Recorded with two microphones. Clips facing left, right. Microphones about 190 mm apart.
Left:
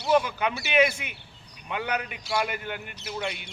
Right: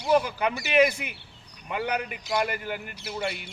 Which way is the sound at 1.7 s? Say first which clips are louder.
Right 1 dB; 5° right (ahead or behind).